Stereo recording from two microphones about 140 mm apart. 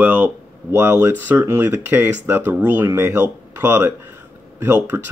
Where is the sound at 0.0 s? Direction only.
15° right (ahead or behind).